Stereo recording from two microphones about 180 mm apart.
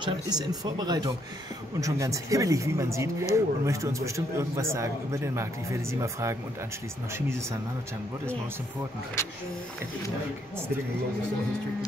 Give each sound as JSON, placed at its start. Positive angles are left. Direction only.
{"t": 0.0, "sound": "speech", "side_deg": -20}